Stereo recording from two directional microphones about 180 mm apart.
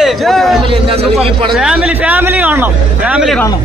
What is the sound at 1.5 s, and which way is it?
Speech, 5° right (ahead or behind).